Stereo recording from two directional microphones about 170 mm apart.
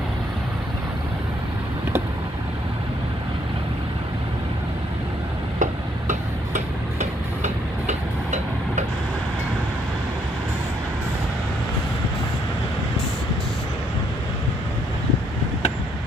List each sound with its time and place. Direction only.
5.6 s tick-tock: 45° right (ahead or behind)